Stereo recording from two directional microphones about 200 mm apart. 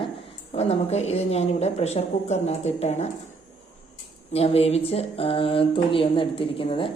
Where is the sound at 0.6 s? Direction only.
30° left (ahead or behind).